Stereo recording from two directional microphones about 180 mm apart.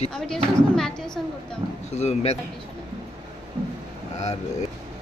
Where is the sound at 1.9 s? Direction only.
40° left (ahead or behind).